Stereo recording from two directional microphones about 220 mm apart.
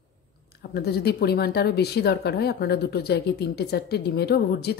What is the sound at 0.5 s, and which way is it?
Speech, 45° left (ahead or behind).